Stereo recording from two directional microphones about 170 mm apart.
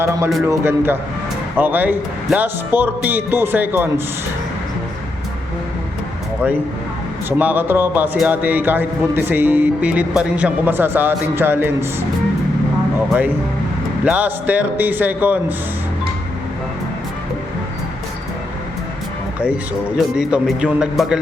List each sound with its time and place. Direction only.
0.4 s a man's voice: 15° right (ahead or behind)
7.3 s a man's voice: 10° right (ahead or behind)
13.1 s a man's voice: 10° right (ahead or behind)
20.1 s speech: 5° right (ahead or behind)